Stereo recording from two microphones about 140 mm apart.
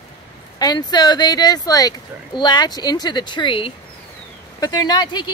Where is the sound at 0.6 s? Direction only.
30° left (ahead or behind).